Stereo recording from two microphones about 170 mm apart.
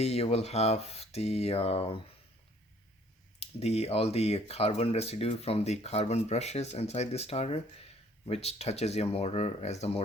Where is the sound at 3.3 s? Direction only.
40° left (ahead or behind).